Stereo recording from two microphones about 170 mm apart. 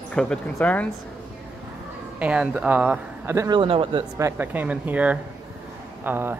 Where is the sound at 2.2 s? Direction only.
5° right (ahead or behind); by 4.0 s 30° right (ahead or behind).